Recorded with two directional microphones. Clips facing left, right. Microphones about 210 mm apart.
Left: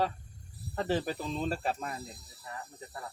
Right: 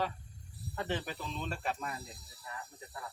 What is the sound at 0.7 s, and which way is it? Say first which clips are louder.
Speech: left 6 dB; 35° left (ahead or behind).